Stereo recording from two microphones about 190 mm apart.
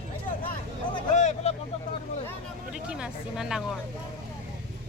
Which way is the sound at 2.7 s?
5° right (ahead or behind).